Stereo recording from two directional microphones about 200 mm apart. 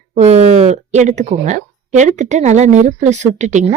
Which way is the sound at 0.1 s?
35° right (ahead or behind).